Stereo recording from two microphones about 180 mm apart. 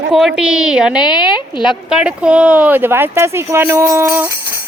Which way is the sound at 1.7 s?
5° right (ahead or behind).